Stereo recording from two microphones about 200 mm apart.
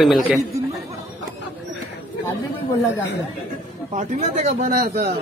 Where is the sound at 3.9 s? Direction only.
35° right (ahead or behind).